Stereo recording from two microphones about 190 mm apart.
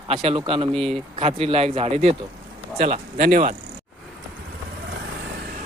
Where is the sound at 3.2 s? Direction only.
45° right (ahead or behind).